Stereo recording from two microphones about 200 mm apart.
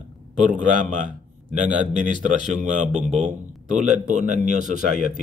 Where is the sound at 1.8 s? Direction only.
35° right (ahead or behind).